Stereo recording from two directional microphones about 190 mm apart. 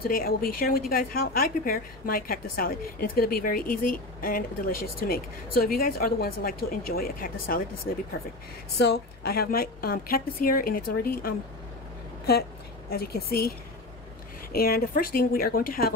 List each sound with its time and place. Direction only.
0.1 s a woman's voice: 50° left (ahead or behind)
8.7 s a woman's voice: 60° left (ahead or behind)
12.9 s a woman's voice: 55° left (ahead or behind)